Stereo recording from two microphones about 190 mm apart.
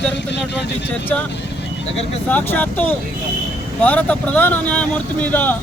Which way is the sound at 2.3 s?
10° left (ahead or behind).